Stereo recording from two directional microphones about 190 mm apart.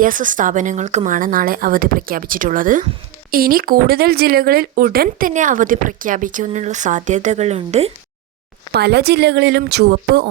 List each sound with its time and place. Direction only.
0.0 s speech: 45° right (ahead or behind)
8.7 s speech: 60° right (ahead or behind)